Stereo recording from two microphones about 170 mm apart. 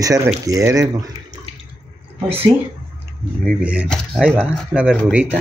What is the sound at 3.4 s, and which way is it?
Speech, 5° right (ahead or behind).